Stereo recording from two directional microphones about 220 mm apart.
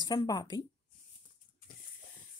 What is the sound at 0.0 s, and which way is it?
Speech, 20° left (ahead or behind).